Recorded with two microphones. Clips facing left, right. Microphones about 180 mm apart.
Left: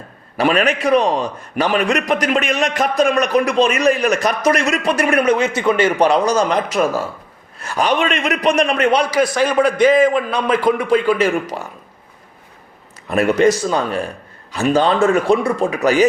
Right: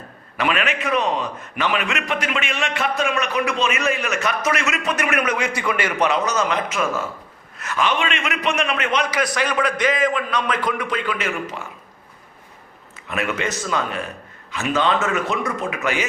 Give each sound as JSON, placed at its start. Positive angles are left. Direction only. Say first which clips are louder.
{"t": 0.3, "sound": "a man's voice", "louder": "left 6 dB", "side_deg": 35}
{"t": 13.1, "sound": "a man's voice", "louder": "left 11 dB", "side_deg": 40}